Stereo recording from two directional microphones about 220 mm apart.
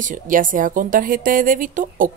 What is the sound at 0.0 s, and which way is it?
Speech, 35° right (ahead or behind).